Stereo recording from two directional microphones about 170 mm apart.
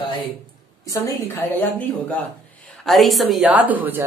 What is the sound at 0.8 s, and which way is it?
Speech, 20° left (ahead or behind).